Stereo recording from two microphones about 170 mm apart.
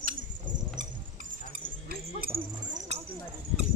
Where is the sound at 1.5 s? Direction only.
60° right (ahead or behind).